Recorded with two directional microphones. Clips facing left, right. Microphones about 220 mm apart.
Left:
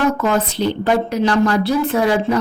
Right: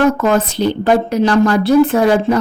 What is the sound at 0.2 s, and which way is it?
A woman's voice, 50° right (ahead or behind).